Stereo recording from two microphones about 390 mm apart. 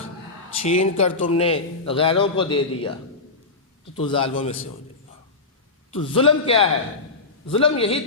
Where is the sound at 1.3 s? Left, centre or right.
Centre.